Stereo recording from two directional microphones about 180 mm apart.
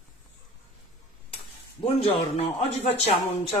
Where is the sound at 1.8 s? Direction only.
35° left (ahead or behind).